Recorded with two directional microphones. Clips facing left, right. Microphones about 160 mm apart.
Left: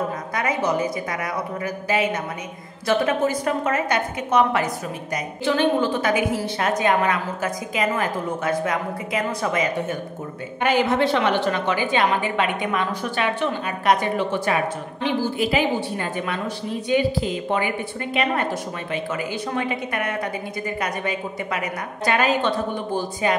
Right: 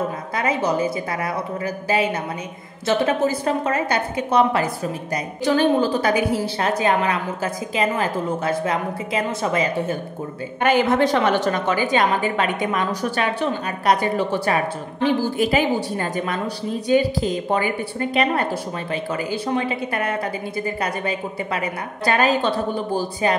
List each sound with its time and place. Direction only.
0.3 s a woman's voice: 30° right (ahead or behind)
10.6 s a woman's voice: 50° right (ahead or behind)